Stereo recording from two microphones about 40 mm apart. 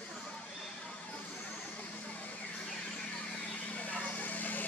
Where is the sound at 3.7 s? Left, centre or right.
Left.